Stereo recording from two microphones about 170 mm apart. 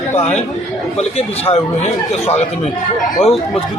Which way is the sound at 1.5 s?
40° left (ahead or behind).